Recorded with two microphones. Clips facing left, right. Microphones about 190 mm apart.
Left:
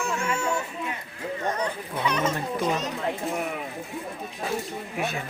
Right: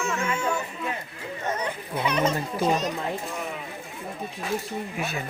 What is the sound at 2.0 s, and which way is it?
Speech, 15° right (ahead or behind).